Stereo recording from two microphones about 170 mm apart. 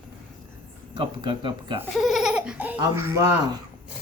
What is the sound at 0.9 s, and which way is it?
Speech, 30° right (ahead or behind).